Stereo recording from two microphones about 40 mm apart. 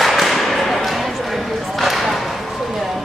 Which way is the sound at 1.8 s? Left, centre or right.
Centre.